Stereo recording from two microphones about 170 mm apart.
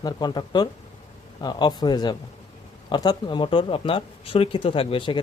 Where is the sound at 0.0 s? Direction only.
25° left (ahead or behind).